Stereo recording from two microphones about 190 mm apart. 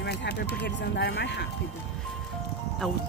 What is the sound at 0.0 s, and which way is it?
Speech, 60° left (ahead or behind).